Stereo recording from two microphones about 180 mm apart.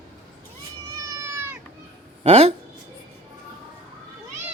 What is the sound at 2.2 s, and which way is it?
Speech, 35° right (ahead or behind).